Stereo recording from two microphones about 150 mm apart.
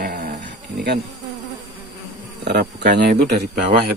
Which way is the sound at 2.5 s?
90° right.